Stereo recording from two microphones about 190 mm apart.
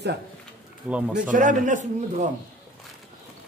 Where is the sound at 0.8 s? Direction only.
10° right (ahead or behind).